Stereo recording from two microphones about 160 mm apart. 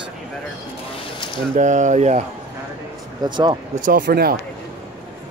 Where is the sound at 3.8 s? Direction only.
60° right (ahead or behind).